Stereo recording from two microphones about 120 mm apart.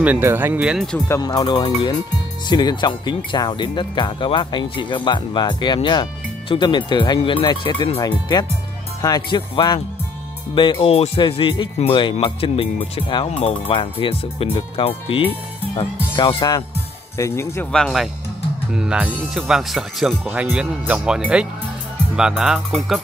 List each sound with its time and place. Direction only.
0.0 s speech: 15° right (ahead or behind)
0.6 s speech: 5° right (ahead or behind)
1.0 s speech: 25° left (ahead or behind)
17.2 s speech: 20° left (ahead or behind)
17.7 s speech: 5° left (ahead or behind)
18.7 s speech: 5° right (ahead or behind)
20.2 s speech: 15° right (ahead or behind)